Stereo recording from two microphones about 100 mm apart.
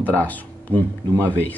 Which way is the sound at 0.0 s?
15° left (ahead or behind).